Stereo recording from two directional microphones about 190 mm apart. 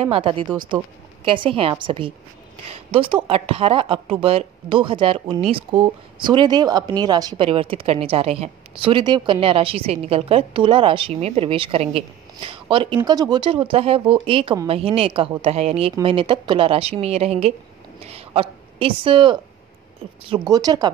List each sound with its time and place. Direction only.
0.0 s speech: 30° right (ahead or behind)
18.0 s a sound: 30° right (ahead or behind)
20.2 s speech: 20° right (ahead or behind)